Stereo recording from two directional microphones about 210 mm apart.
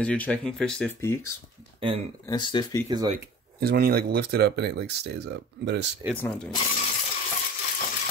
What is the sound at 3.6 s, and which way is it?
Speech, 45° right (ahead or behind).